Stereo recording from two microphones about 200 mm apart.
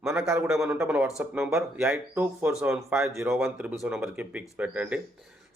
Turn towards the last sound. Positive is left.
turn(degrees=-5)  # may be behind; listen again after turning